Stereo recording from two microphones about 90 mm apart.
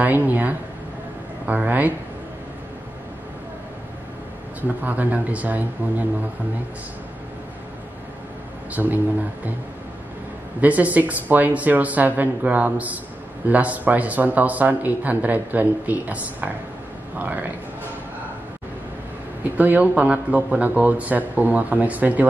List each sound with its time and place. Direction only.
0.0 s a man's voice: 20° right (ahead or behind)
4.6 s a man's voice: 20° right (ahead or behind)
8.7 s speech: 20° right (ahead or behind)
10.6 s a man's voice: 15° right (ahead or behind)
19.5 s a man's voice: 20° right (ahead or behind)